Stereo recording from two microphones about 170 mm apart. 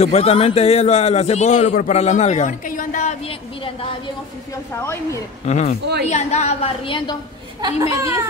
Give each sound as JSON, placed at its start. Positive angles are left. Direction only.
{"t": 0.0, "sound": "a man's voice", "side_deg": 40}
{"t": 5.4, "sound": "a man's voice", "side_deg": 40}
{"t": 7.6, "sound": "a child's voice", "side_deg": -20}